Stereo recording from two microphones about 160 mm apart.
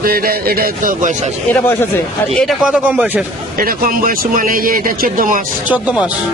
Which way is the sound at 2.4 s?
5° right (ahead or behind).